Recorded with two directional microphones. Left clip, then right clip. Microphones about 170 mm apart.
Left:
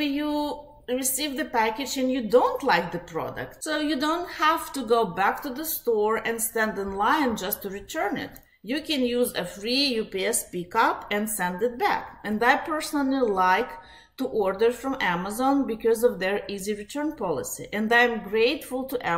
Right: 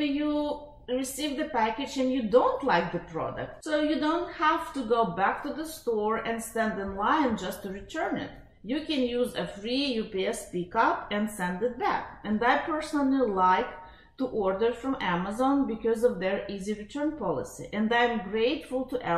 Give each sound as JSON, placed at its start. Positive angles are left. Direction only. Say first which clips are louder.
{"t": 0.8, "sound": "speech", "louder": "left 3 dB", "side_deg": 15}
{"t": 2.0, "sound": "speech", "louder": "left 2 dB", "side_deg": 0}
{"t": 2.3, "sound": "speech", "louder": "left 3 dB", "side_deg": 15}